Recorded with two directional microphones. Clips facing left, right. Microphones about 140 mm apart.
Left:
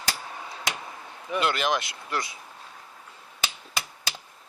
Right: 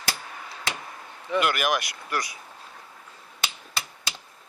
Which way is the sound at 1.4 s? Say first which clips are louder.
Right 1 dB; 25° left (ahead or behind).